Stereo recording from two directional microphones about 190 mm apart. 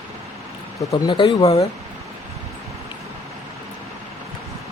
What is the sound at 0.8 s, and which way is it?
Speech, 25° left (ahead or behind).